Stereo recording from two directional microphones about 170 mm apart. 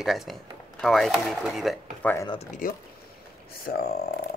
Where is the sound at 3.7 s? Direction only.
65° left (ahead or behind).